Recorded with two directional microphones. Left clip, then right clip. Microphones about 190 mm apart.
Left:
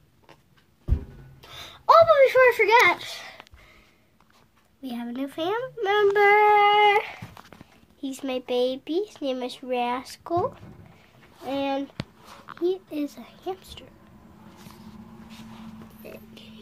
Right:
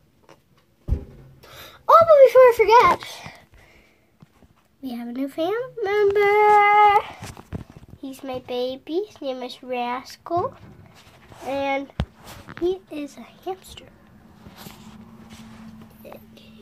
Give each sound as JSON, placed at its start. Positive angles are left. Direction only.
{"t": 1.4, "sound": "a sound", "side_deg": -5}
{"t": 4.8, "sound": "a child's voice", "side_deg": 5}
{"t": 8.0, "sound": "speech", "side_deg": 10}
{"t": 11.4, "sound": "a child's voice", "side_deg": 0}
{"t": 16.1, "sound": "music", "side_deg": 20}